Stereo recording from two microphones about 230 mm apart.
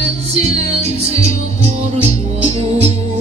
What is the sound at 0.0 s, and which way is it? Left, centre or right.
Music, right.